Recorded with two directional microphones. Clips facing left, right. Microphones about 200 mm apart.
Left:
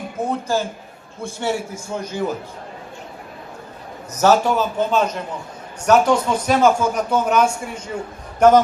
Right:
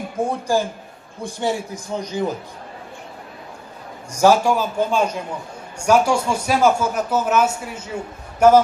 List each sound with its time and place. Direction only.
0.2 s speech: 10° right (ahead or behind)
4.1 s speech: 10° right (ahead or behind)